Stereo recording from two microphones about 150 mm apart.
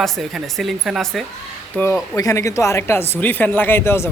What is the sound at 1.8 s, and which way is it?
Speech, 20° left (ahead or behind).